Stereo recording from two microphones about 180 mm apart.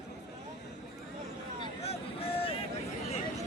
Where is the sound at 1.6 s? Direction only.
30° left (ahead or behind).